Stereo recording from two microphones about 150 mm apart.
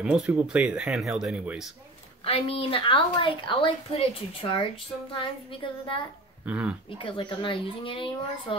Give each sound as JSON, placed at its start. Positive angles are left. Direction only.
{"t": 0.0, "sound": "speech", "side_deg": -5}
{"t": 2.2, "sound": "a woman's voice", "side_deg": 40}
{"t": 6.4, "sound": "speech", "side_deg": -10}
{"t": 7.0, "sound": "a woman's voice", "side_deg": 35}